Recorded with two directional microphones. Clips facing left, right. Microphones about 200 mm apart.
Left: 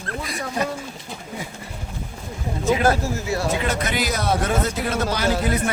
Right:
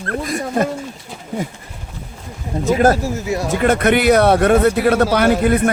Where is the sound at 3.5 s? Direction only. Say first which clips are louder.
Right 9 dB; 55° right (ahead or behind).